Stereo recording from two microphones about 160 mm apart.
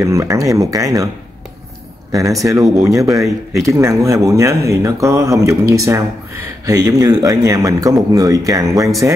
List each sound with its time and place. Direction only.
0.0 s speech: 20° right (ahead or behind)
2.1 s speech: 20° right (ahead or behind)